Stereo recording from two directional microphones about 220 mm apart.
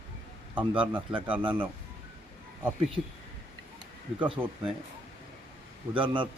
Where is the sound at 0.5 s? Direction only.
5° right (ahead or behind).